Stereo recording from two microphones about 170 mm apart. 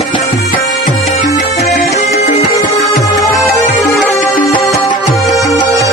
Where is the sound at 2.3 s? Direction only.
40° left (ahead or behind).